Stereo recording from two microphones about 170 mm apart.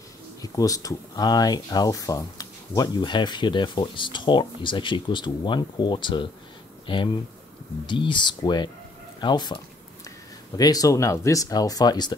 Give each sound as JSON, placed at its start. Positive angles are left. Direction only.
{"t": 0.4, "sound": "speech", "side_deg": 20}